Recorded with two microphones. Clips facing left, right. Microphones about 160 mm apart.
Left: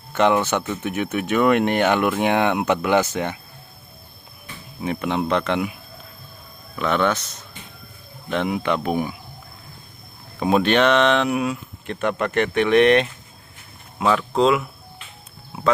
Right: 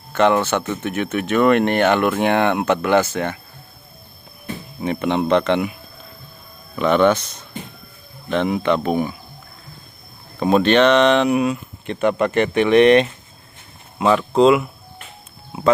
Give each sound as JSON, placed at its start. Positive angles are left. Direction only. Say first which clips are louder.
{"t": 0.1, "sound": "speech", "louder": "right 2 dB", "side_deg": 15}
{"t": 4.8, "sound": "speech", "louder": "right 3 dB", "side_deg": 0}
{"t": 6.7, "sound": "speech", "louder": "right 6 dB", "side_deg": 0}
{"t": 8.3, "sound": "speech", "louder": "right 4 dB", "side_deg": 5}
{"t": 10.4, "sound": "speech", "louder": "right 3 dB", "side_deg": 5}